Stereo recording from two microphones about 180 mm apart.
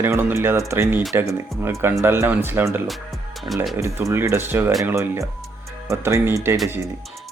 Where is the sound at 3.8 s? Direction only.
15° right (ahead or behind).